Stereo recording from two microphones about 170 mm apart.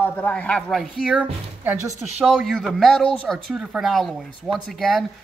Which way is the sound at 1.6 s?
15° right (ahead or behind).